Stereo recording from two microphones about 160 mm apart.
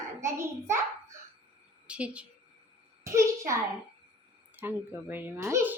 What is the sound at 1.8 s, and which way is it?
Speech, 5° right (ahead or behind).